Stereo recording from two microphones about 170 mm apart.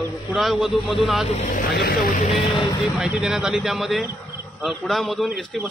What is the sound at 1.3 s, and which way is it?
Speech, 50° left (ahead or behind).